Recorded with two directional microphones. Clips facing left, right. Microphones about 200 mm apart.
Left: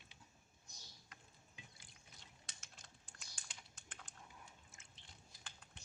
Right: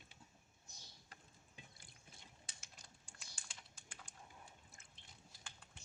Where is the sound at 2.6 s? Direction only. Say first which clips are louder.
Even; 10° right (ahead or behind).